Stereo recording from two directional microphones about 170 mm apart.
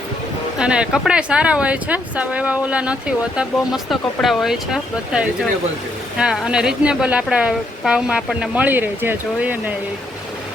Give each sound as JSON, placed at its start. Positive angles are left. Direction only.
{"t": 0.6, "sound": "speech", "side_deg": -5}